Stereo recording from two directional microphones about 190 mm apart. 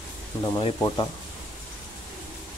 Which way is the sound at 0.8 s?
20° left (ahead or behind).